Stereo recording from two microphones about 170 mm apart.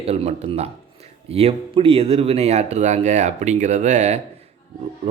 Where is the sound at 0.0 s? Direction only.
35° right (ahead or behind).